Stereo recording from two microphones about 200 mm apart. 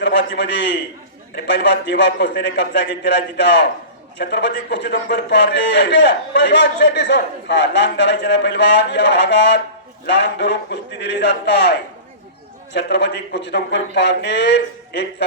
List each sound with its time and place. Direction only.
0.0 s a man's voice: 60° left (ahead or behind)